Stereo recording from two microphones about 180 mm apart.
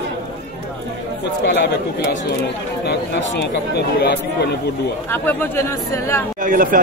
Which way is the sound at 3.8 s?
65° left (ahead or behind).